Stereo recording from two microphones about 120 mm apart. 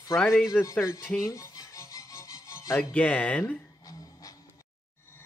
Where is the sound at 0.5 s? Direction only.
25° left (ahead or behind).